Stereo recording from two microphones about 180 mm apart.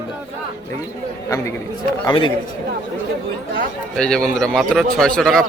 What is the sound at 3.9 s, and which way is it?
A man's voice, 5° left (ahead or behind).